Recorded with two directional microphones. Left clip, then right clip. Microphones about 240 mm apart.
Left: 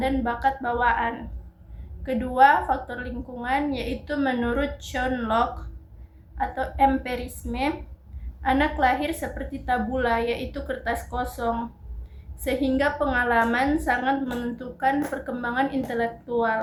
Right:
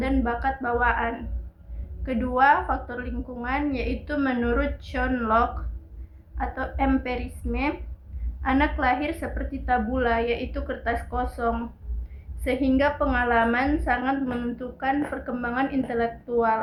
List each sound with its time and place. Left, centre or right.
0.0 s a woman's voice: left